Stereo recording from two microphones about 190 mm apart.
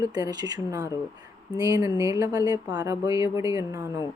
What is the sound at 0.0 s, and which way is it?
Speech, 20° right (ahead or behind).